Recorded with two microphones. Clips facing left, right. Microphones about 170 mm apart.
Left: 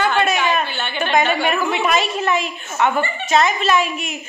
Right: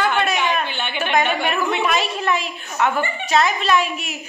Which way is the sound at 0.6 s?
20° right (ahead or behind).